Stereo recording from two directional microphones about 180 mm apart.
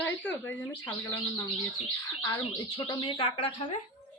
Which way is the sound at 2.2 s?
20° left (ahead or behind).